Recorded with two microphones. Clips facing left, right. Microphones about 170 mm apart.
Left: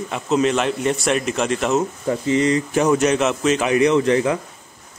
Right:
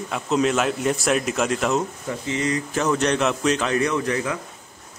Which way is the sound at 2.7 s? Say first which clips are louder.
Left 2 dB; 15° left (ahead or behind).